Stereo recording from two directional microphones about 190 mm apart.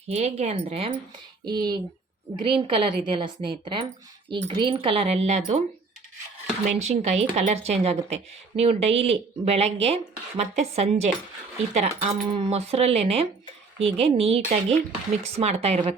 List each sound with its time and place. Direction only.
0.1 s speech: 35° right (ahead or behind)
6.7 s speech: 35° right (ahead or behind)